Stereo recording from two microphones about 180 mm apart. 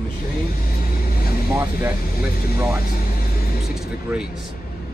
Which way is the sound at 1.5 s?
10° right (ahead or behind).